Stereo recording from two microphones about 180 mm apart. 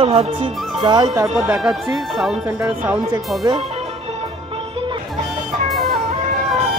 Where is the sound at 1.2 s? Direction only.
Centre (ahead or behind).